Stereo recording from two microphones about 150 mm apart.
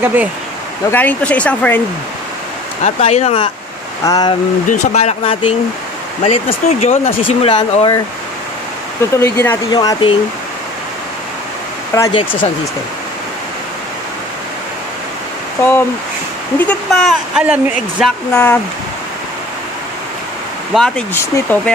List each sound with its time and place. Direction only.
0.0 s speech: 10° right (ahead or behind)
0.9 s speech: 10° left (ahead or behind)
2.8 s speech: 45° left (ahead or behind)
4.0 s speech: 25° left (ahead or behind)
4.6 s speech: 45° left (ahead or behind)
9.2 s speech: 15° left (ahead or behind)
9.7 s speech: 30° left (ahead or behind)
12.1 s speech: 35° left (ahead or behind)
15.6 s speech: 15° left (ahead or behind)
16.5 s speech: 5° left (ahead or behind); by 18.0 s 10° right (ahead or behind)
18.3 s speech: 15° left (ahead or behind)
20.7 s speech: 5° left (ahead or behind)